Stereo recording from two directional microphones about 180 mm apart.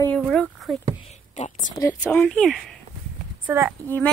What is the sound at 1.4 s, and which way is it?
Speech, 40° left (ahead or behind).